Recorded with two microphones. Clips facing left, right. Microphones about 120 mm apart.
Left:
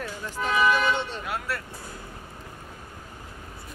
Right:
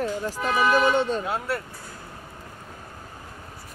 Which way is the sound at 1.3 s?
25° right (ahead or behind).